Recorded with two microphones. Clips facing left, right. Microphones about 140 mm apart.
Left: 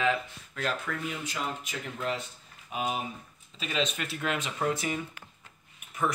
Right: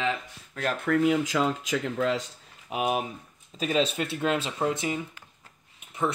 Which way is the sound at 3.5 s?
40° right (ahead or behind).